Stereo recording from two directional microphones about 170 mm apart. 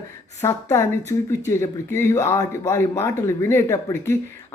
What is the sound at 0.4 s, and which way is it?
Speech, 15° left (ahead or behind).